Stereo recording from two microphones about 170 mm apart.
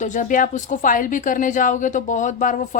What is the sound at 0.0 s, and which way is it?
A woman's voice, 45° left (ahead or behind).